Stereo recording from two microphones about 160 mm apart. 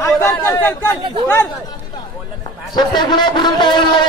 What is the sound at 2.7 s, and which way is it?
A man's voice, 25° left (ahead or behind).